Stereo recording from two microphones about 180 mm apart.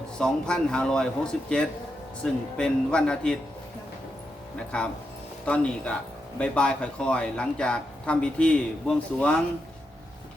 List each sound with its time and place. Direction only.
0.2 s speech: 5° left (ahead or behind)
4.5 s speech: 5° left (ahead or behind)